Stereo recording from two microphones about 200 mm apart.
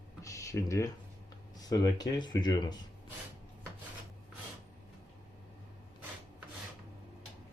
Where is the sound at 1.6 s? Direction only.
20° left (ahead or behind).